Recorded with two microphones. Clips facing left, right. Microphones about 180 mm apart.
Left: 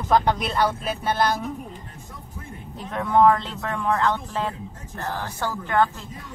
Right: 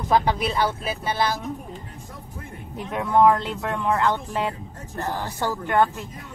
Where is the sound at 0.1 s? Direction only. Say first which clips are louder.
Even; 5° right (ahead or behind).